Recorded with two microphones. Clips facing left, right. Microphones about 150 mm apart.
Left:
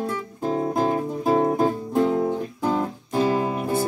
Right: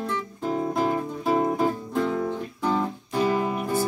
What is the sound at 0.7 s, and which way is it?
Music, 40° left (ahead or behind).